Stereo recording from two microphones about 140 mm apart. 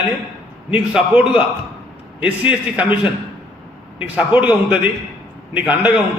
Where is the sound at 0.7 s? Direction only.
10° right (ahead or behind).